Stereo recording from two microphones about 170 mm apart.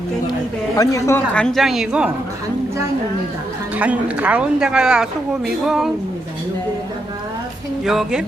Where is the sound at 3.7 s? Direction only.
10° right (ahead or behind).